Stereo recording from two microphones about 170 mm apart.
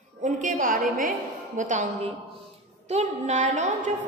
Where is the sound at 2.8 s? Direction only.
40° right (ahead or behind).